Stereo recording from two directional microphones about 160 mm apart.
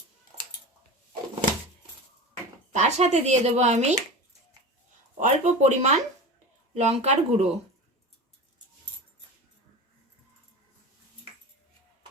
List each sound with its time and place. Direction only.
2.7 s speech: 45° right (ahead or behind)
5.2 s speech: 45° right (ahead or behind)